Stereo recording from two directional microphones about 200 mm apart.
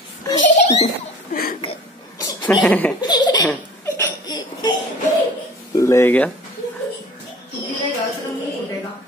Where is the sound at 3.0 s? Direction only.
20° left (ahead or behind).